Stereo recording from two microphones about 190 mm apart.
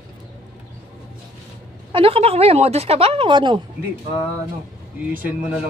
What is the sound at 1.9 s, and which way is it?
A woman's voice, 30° right (ahead or behind).